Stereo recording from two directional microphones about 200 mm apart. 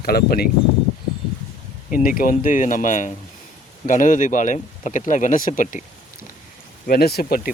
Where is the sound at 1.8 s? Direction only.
45° left (ahead or behind).